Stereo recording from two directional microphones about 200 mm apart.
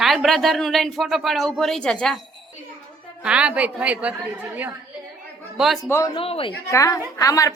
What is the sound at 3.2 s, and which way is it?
Speech, 5° right (ahead or behind).